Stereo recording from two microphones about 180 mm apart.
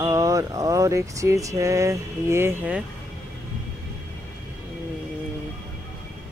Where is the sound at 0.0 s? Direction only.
20° right (ahead or behind).